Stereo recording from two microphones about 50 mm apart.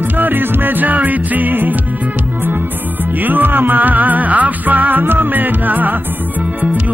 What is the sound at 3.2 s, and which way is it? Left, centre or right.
Music, right.